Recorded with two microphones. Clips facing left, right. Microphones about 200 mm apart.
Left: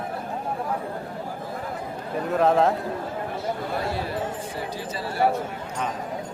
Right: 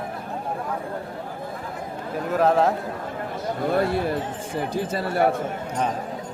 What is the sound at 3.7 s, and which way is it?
Speech, 55° right (ahead or behind).